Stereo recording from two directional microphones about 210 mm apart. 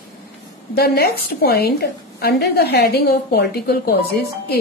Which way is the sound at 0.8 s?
50° left (ahead or behind).